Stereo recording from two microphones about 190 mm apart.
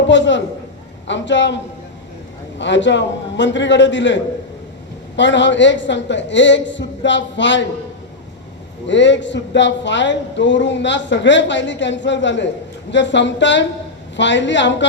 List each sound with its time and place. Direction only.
0.1 s speech: 70° left (ahead or behind)
8.9 s speech: 70° left (ahead or behind)